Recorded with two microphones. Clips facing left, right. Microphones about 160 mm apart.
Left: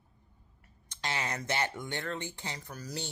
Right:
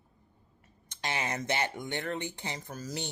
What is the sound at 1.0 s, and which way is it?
Speech, 15° right (ahead or behind).